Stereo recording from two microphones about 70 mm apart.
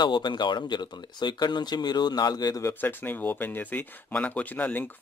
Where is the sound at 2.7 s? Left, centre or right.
Left.